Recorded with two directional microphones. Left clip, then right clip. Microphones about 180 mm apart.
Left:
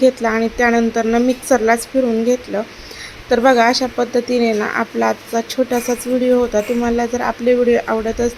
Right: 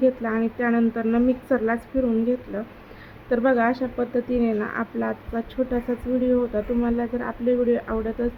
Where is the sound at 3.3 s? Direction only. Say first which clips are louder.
Left 9 dB; 30° left (ahead or behind).